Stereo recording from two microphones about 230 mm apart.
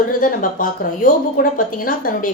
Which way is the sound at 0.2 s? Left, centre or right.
Left.